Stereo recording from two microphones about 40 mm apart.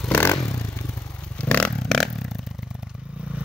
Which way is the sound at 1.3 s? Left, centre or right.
Left.